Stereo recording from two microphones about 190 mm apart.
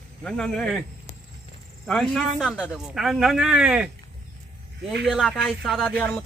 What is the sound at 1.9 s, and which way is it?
Speech, centre (ahead or behind).